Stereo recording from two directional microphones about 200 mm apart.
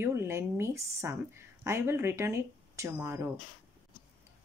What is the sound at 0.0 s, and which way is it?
A woman's voice, 10° right (ahead or behind).